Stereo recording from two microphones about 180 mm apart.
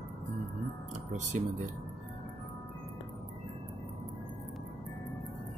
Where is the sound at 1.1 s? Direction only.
40° right (ahead or behind).